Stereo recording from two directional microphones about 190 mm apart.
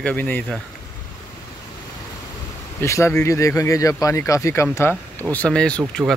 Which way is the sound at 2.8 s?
15° left (ahead or behind).